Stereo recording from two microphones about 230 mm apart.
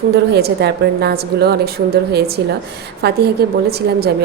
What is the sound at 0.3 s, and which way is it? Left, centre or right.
A woman's voice, right.